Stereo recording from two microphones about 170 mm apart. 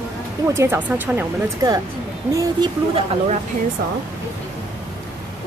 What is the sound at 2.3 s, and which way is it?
Speech, 20° right (ahead or behind).